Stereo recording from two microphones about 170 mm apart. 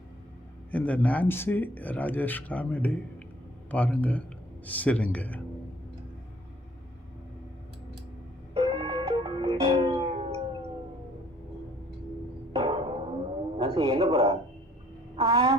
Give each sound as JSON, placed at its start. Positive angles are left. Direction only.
{"t": 0.7, "sound": "speech", "side_deg": 10}
{"t": 8.5, "sound": "music", "side_deg": -30}
{"t": 12.5, "sound": "music", "side_deg": -30}
{"t": 13.3, "sound": "wild animals", "side_deg": -30}
{"t": 15.1, "sound": "a sound", "side_deg": -30}